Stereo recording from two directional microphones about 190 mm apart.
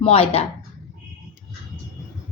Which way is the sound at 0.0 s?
30° left (ahead or behind).